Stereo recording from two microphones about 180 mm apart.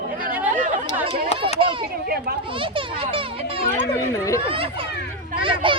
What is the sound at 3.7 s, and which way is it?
Speech, 15° left (ahead or behind).